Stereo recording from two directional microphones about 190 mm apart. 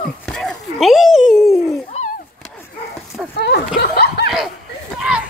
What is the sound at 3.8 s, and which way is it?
Snicker, 60° left (ahead or behind).